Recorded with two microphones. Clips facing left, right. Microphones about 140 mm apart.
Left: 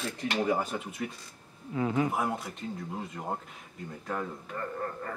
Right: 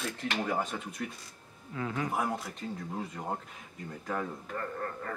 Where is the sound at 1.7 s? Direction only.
20° left (ahead or behind).